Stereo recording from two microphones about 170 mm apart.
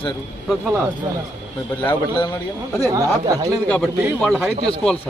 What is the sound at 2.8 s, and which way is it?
Speech, 20° right (ahead or behind).